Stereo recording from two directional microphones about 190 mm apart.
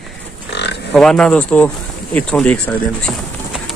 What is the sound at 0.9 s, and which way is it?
A man's voice, 5° left (ahead or behind).